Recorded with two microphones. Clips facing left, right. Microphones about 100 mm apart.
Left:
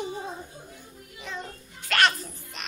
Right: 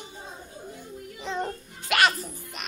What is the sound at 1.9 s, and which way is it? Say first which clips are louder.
Children playing: right 1 dB; 10° right (ahead or behind).